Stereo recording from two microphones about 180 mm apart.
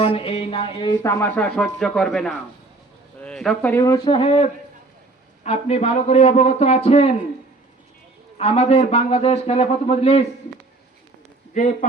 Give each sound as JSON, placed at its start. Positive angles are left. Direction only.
{"t": 0.0, "sound": "a sound", "side_deg": 30}
{"t": 1.0, "sound": "a man's voice", "side_deg": 15}
{"t": 8.4, "sound": "a man's voice", "side_deg": 35}
{"t": 11.5, "sound": "speech", "side_deg": 40}